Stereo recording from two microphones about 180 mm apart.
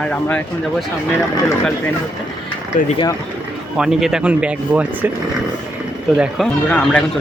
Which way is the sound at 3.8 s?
Centre (ahead or behind).